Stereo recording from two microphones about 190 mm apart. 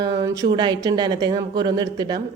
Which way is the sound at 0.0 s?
20° right (ahead or behind).